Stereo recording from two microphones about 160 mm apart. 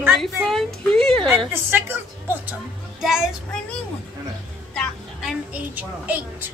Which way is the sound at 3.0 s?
Centre (ahead or behind).